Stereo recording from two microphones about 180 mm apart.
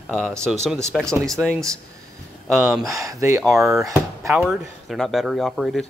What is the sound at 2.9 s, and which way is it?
Speech, 20° right (ahead or behind).